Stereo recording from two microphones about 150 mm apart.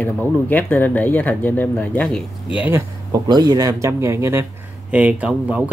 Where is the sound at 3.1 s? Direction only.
30° right (ahead or behind).